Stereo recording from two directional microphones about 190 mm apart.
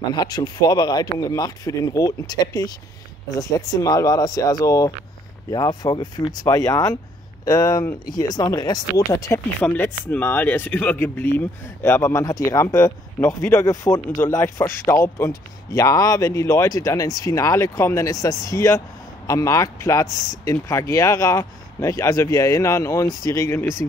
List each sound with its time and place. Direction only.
0.1 s speech: 20° left (ahead or behind)